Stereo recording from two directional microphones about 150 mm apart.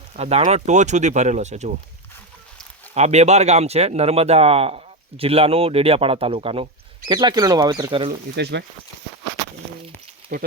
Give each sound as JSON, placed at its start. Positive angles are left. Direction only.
{"t": 0.2, "sound": "speech", "side_deg": -45}
{"t": 2.9, "sound": "speech", "side_deg": -50}